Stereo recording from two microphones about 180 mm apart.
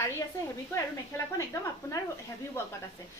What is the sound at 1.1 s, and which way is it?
Speech, 15° left (ahead or behind).